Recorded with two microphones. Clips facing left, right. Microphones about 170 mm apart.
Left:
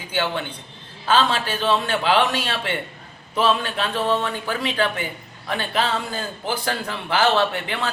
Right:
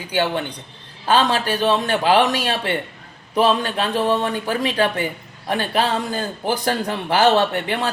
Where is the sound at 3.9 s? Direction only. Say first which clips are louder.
Right 3 dB; 15° right (ahead or behind).